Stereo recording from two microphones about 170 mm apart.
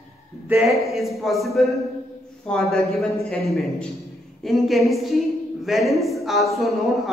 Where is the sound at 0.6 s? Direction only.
Centre (ahead or behind).